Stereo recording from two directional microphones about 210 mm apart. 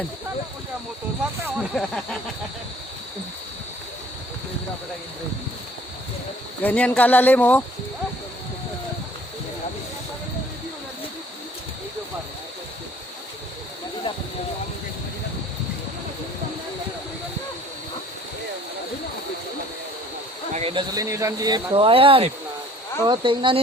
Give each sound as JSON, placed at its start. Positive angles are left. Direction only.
{"t": 1.7, "sound": "a sound", "side_deg": 5}
{"t": 6.6, "sound": "speech", "side_deg": 5}
{"t": 20.5, "sound": "speech", "side_deg": -30}